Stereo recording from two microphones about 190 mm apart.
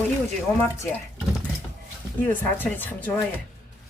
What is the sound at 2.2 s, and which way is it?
Speech, 10° left (ahead or behind).